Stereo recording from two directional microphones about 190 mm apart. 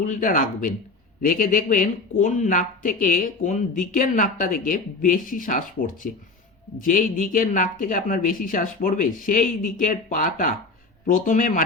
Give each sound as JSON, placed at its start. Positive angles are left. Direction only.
{"t": 0.0, "sound": "speech", "side_deg": 45}